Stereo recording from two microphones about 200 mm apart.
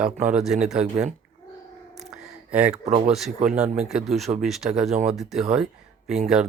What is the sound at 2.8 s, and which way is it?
Speech, 35° right (ahead or behind).